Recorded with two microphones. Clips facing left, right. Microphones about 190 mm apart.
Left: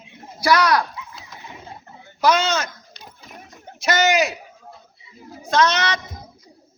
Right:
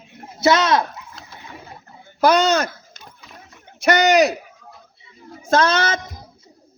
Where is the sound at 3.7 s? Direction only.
35° left (ahead or behind).